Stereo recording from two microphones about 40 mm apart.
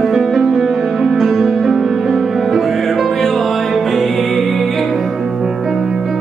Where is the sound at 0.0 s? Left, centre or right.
Centre.